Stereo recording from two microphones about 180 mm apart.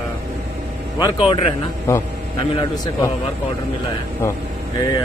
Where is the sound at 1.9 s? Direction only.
15° left (ahead or behind).